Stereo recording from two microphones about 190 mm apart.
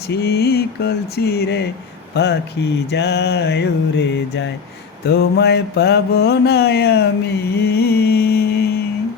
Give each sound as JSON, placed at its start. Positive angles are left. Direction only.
{"t": 0.1, "sound": "mantra", "side_deg": 55}